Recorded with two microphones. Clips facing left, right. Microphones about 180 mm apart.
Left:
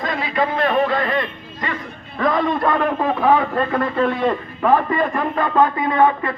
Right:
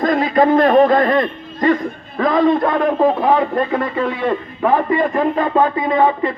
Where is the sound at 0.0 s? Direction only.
45° right (ahead or behind).